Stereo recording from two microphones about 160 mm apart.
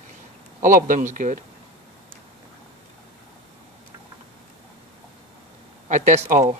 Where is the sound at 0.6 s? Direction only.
55° right (ahead or behind).